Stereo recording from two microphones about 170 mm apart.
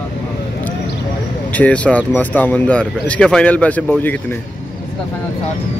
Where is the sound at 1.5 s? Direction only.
10° left (ahead or behind).